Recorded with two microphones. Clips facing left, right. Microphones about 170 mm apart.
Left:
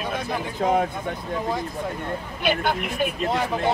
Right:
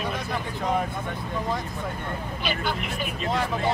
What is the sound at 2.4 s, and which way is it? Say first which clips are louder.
Speech: left 6 dB; 55° left (ahead or behind).